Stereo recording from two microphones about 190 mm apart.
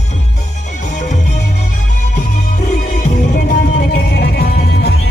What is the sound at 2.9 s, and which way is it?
Music, 40° left (ahead or behind).